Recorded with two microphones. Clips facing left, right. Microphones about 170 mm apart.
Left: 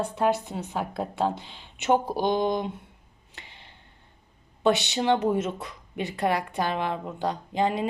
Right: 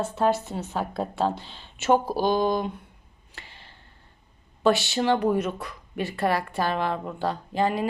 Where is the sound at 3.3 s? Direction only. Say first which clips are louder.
Right 1 dB; 20° left (ahead or behind).